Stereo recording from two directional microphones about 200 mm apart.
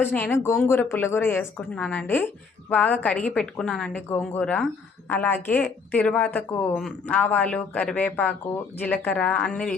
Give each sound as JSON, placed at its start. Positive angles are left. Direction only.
{"t": 0.0, "sound": "speech", "side_deg": 10}